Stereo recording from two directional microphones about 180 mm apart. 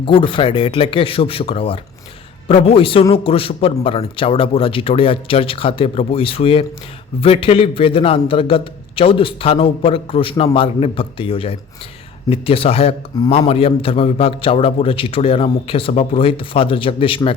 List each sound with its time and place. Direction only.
0.0 s a man's voice: 30° left (ahead or behind)